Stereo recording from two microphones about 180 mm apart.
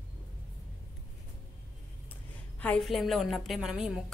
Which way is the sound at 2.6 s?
5° left (ahead or behind).